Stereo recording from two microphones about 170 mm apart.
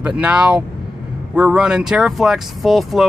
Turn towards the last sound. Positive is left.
turn(degrees=0)  # may be behind; listen again after turning